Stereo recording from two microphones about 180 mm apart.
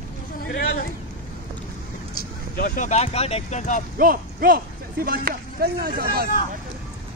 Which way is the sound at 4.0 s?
50° right (ahead or behind).